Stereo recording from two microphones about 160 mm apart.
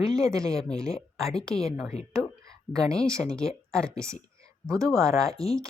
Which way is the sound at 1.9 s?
40° left (ahead or behind).